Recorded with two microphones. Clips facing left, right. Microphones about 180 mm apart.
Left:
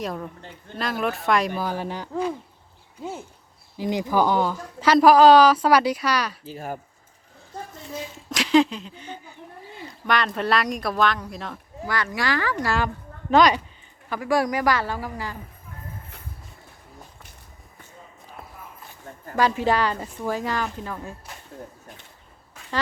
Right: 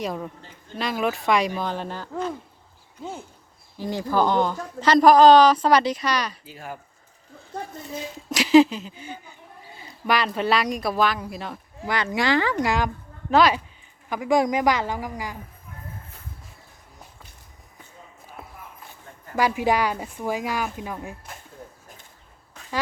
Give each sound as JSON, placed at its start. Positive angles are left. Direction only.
{"t": 0.0, "sound": "speech", "side_deg": 0}
{"t": 3.8, "sound": "speech", "side_deg": 15}
{"t": 6.4, "sound": "speech", "side_deg": 40}
{"t": 8.3, "sound": "speech", "side_deg": -5}
{"t": 11.9, "sound": "speech", "side_deg": -20}
{"t": 13.3, "sound": "speech", "side_deg": -5}
{"t": 14.1, "sound": "speech", "side_deg": -15}
{"t": 19.4, "sound": "speech", "side_deg": -10}